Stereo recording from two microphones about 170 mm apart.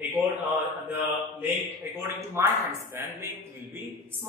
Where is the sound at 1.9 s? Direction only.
15° right (ahead or behind).